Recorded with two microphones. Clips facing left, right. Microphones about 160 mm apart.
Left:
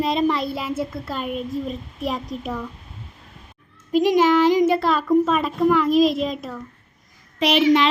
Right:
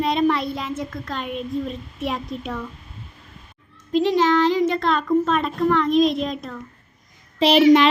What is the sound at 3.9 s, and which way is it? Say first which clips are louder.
Speech: left 2 dB; 10° left (ahead or behind).